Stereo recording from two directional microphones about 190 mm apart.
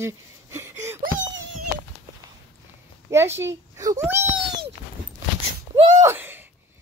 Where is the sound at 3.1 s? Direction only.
15° right (ahead or behind).